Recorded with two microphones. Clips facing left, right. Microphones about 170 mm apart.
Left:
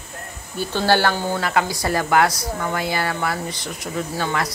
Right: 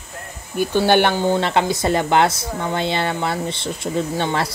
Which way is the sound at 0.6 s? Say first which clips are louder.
Right 4 dB; 15° right (ahead or behind).